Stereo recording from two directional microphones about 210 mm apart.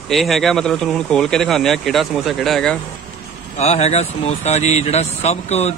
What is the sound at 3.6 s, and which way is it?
Speech, 30° left (ahead or behind).